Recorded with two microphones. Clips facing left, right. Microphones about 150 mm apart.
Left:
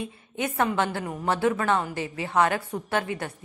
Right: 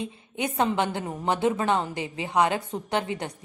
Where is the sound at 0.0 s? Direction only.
20° right (ahead or behind).